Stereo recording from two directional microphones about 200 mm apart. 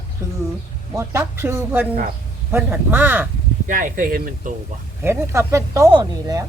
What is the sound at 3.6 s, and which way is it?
Speech, 40° right (ahead or behind).